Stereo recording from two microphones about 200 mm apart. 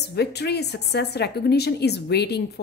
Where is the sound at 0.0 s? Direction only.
55° left (ahead or behind).